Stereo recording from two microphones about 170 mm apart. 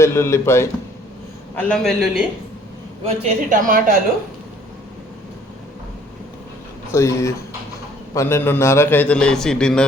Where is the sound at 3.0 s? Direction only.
45° right (ahead or behind).